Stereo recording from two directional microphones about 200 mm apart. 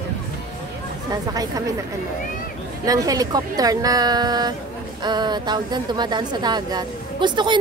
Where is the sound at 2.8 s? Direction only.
20° right (ahead or behind).